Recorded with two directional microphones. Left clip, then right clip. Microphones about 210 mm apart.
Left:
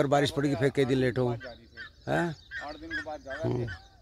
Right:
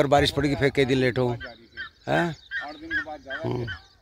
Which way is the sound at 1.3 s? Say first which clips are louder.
Right 5 dB; 55° left (ahead or behind).